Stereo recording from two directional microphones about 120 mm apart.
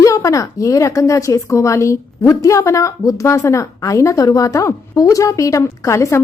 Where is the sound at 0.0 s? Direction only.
25° left (ahead or behind).